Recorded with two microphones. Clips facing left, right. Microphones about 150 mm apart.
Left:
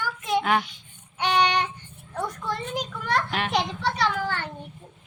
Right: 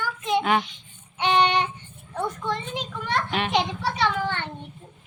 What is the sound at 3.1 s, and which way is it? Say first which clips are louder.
A woman's voice: right 1 dB; centre (ahead or behind).